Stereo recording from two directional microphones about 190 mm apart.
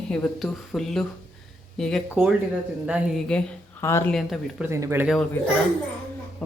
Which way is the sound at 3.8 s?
15° left (ahead or behind).